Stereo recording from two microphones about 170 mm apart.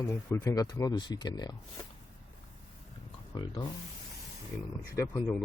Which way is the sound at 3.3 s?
25° left (ahead or behind).